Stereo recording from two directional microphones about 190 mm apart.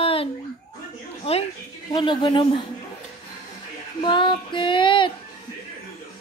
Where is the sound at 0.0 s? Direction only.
30° left (ahead or behind).